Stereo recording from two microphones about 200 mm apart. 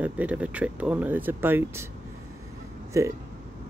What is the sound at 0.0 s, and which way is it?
Speech, 5° right (ahead or behind).